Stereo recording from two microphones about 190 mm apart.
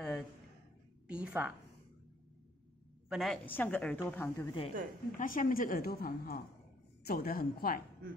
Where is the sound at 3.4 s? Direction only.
10° left (ahead or behind).